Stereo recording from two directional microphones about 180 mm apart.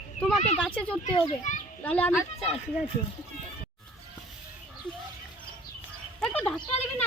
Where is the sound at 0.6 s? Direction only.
5° left (ahead or behind).